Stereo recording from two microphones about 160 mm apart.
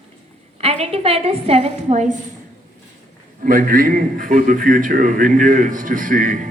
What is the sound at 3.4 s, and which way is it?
A man's voice, 60° right (ahead or behind).